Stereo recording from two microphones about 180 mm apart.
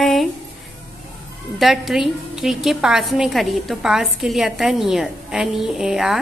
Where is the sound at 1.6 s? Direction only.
Centre (ahead or behind).